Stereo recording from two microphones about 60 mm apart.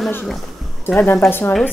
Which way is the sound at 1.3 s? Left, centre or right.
Left.